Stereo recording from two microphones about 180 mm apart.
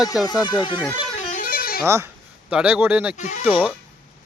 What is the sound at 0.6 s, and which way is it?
Speech, 25° left (ahead or behind).